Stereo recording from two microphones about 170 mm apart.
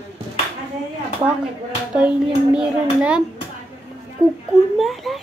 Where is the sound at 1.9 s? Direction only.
5° right (ahead or behind).